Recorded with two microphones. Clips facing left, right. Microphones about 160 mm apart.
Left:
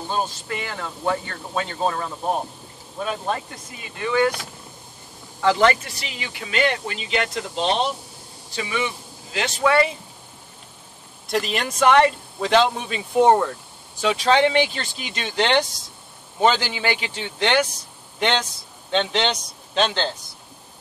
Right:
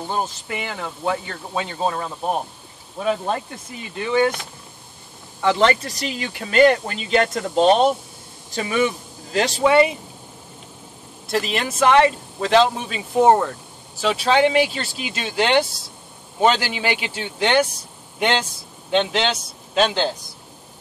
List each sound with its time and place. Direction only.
0.5 s speech: 20° right (ahead or behind)
4.0 s speech: 25° right (ahead or behind)
5.4 s speech: 25° right (ahead or behind)
5.9 s speech: 40° right (ahead or behind)
9.6 s speech: 20° right (ahead or behind)
11.2 s speech: centre (ahead or behind)
18.9 s speech: 5° right (ahead or behind)